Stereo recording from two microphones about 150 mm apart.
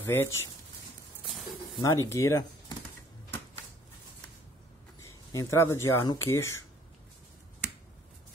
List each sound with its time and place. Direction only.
0.0 s speech: 15° left (ahead or behind)
1.8 s speech: 20° left (ahead or behind)
5.0 s speech: 20° left (ahead or behind)